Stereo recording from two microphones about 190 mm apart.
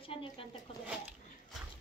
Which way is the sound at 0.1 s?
30° left (ahead or behind).